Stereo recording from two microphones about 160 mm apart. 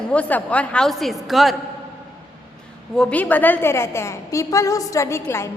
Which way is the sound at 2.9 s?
5° left (ahead or behind).